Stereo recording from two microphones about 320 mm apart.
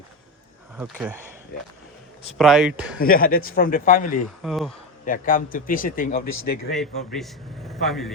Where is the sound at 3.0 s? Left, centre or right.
Left.